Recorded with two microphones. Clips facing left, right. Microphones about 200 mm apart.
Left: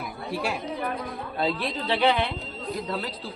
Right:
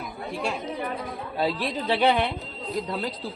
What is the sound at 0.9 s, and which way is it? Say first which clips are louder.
A woman's voice: right 1 dB; 10° right (ahead or behind).